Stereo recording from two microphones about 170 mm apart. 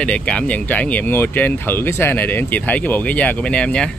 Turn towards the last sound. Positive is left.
turn(degrees=5)  # may be behind; listen again after turning